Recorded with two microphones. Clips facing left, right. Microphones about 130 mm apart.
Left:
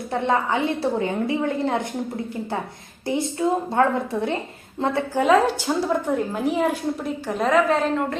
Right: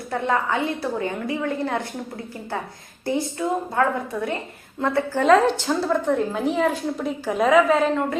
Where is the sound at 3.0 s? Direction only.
20° left (ahead or behind).